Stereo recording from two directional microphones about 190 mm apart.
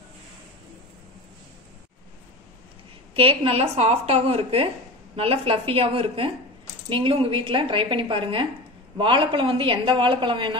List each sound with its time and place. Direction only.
3.2 s a woman's voice: 30° right (ahead or behind)